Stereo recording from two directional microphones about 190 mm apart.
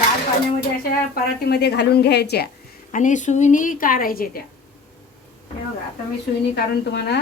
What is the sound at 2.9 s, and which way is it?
A woman's voice, 40° left (ahead or behind).